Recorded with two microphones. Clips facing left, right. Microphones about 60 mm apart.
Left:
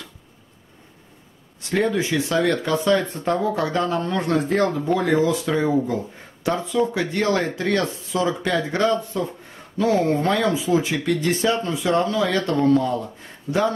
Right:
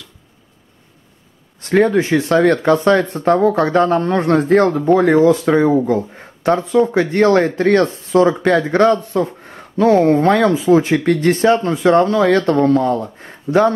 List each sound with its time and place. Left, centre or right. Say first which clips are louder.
1.6 s speech: right 8 dB; right